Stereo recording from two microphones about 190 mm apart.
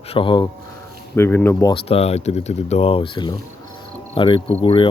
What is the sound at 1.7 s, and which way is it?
Speech, 30° left (ahead or behind).